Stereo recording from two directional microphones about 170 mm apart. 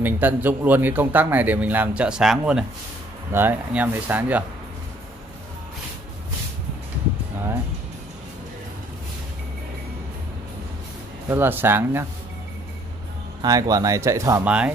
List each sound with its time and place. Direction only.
0.0 s a man's voice: 10° right (ahead or behind)
11.2 s a man's voice: 15° right (ahead or behind)
13.4 s speech: 20° right (ahead or behind)
14.4 s a man's voice: 5° right (ahead or behind)